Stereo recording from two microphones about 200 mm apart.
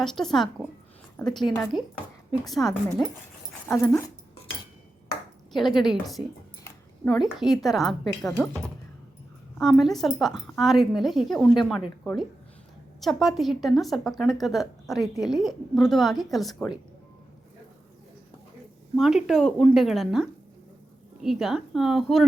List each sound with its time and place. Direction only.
0.0 s speech: centre (ahead or behind)
1.4 s speech: 20° left (ahead or behind)
2.5 s speech: centre (ahead or behind)
3.7 s speech: 15° left (ahead or behind)
5.5 s speech: centre (ahead or behind)
18.9 s speech: centre (ahead or behind)